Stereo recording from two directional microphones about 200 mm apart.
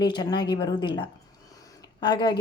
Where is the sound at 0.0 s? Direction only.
20° left (ahead or behind).